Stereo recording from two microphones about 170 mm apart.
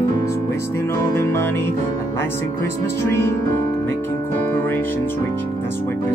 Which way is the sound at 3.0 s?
15° left (ahead or behind).